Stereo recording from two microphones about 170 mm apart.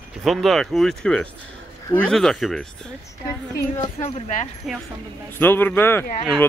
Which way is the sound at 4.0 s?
35° left (ahead or behind).